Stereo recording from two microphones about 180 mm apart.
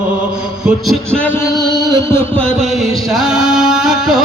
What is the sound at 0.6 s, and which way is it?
Music, centre (ahead or behind).